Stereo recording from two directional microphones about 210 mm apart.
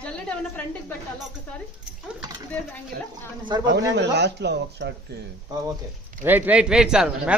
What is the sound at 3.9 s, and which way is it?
Speech, 55° right (ahead or behind).